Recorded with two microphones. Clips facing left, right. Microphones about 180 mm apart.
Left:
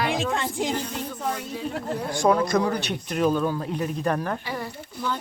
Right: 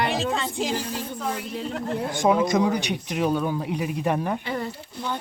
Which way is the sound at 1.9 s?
20° right (ahead or behind).